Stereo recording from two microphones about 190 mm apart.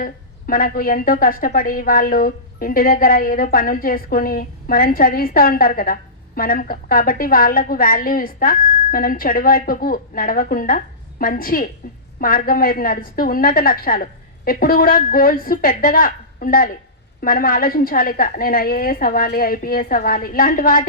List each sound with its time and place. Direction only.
0.0 s a woman's voice: 50° left (ahead or behind)